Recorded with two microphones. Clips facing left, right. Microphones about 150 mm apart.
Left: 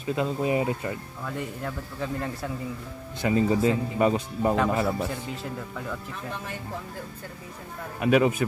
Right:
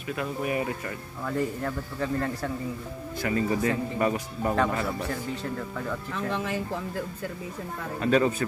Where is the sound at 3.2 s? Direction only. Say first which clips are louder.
Left 4 dB; 20° left (ahead or behind).